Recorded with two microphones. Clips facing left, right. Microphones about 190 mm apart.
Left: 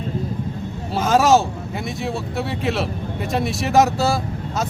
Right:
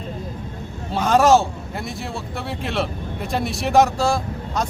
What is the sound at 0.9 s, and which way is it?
Speech, centre (ahead or behind).